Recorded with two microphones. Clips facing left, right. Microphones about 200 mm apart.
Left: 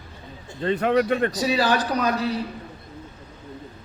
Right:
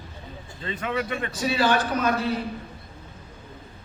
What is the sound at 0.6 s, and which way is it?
Speech, 55° left (ahead or behind).